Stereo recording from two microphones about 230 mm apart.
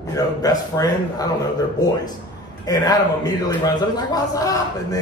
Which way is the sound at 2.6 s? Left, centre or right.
Centre.